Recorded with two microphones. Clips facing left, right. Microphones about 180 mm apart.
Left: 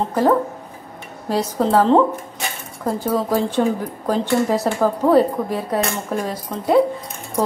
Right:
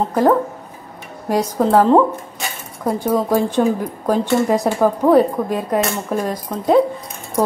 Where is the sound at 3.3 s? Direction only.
15° right (ahead or behind).